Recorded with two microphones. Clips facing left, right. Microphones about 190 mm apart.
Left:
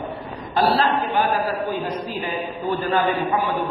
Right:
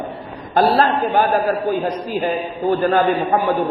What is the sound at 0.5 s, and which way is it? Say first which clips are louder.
A man's voice: right 4 dB; 50° right (ahead or behind).